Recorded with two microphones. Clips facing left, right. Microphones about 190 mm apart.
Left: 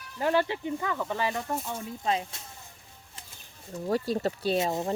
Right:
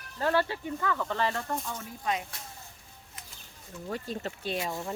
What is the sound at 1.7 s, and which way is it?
Speech, 25° left (ahead or behind).